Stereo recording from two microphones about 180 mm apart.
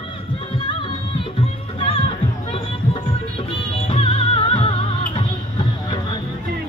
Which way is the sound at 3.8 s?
30° left (ahead or behind).